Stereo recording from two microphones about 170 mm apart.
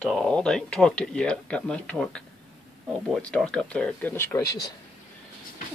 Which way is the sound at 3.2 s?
5° left (ahead or behind).